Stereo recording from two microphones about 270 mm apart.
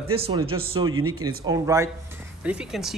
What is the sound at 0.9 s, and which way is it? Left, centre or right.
Speech, right.